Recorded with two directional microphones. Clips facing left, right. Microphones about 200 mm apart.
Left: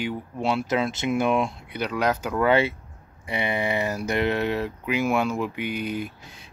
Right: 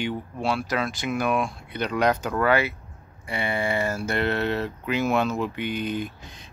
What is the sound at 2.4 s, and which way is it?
Speech, 25° left (ahead or behind).